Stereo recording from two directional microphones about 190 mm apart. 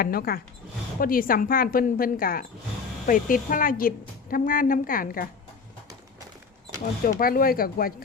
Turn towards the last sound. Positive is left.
turn(degrees=50)  # may be behind; listen again after turning